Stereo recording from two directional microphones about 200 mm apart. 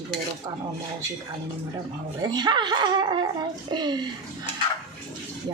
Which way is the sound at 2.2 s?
20° right (ahead or behind).